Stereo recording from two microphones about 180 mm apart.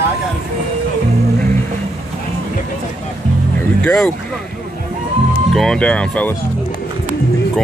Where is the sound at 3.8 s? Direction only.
5° left (ahead or behind).